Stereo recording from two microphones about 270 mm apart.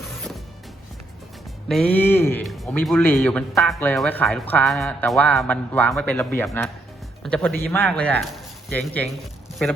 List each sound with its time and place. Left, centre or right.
1.6 s speech: centre
7.2 s music: centre
7.6 s speech: centre